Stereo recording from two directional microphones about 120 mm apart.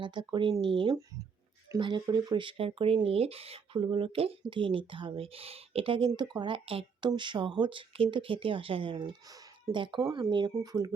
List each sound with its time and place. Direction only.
0.0 s speech: 40° right (ahead or behind)
9.2 s speech: 30° right (ahead or behind)